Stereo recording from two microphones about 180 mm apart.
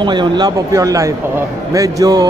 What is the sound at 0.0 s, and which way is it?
Speech, 25° right (ahead or behind).